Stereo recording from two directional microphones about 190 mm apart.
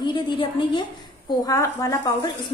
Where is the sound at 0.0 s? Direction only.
25° left (ahead or behind).